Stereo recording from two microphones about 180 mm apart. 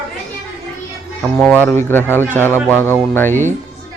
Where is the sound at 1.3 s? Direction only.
10° left (ahead or behind).